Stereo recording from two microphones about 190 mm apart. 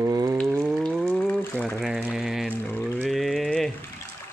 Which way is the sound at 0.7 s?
Centre (ahead or behind).